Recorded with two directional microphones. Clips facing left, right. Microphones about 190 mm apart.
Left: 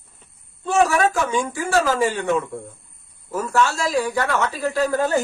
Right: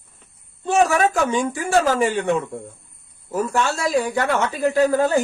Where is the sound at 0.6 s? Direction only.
20° right (ahead or behind).